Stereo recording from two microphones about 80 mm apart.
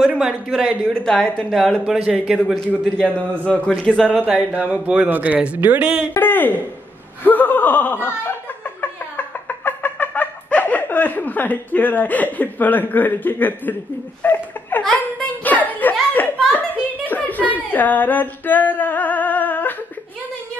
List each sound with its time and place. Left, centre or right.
0.0 s a man's voice: centre
0.9 s a man's voice: centre
1.9 s speech: centre
2.4 s a man's voice: centre
4.2 s speech: centre
6.2 s a sound: left